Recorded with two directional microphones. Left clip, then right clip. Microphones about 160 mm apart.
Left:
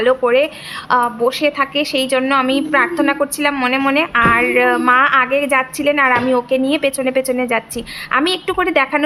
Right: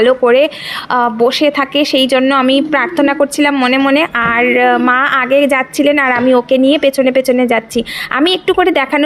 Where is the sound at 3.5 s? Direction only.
15° right (ahead or behind).